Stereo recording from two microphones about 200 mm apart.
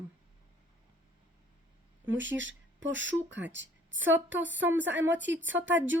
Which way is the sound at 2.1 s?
70° right (ahead or behind).